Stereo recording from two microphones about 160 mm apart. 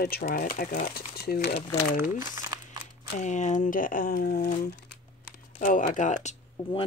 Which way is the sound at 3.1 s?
50° left (ahead or behind).